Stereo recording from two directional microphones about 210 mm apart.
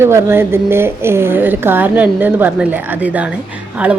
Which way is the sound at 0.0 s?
10° right (ahead or behind).